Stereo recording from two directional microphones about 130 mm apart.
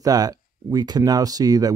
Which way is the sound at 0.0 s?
30° right (ahead or behind).